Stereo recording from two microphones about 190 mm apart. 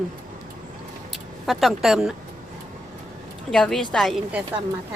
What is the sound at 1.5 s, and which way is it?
Speech, centre (ahead or behind).